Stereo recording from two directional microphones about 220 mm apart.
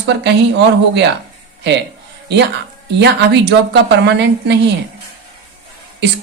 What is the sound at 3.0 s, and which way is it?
A woman's voice, 50° right (ahead or behind).